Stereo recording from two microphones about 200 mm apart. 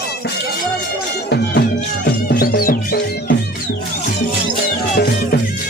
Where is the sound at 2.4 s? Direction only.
45° left (ahead or behind).